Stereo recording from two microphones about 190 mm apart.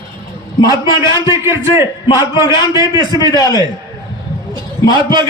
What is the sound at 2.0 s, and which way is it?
Speech, 20° left (ahead or behind).